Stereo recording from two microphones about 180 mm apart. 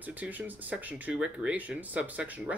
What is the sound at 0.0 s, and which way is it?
Speech, 10° right (ahead or behind).